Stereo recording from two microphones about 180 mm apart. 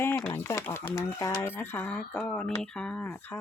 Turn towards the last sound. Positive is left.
turn(degrees=5)  # may be behind; listen again after turning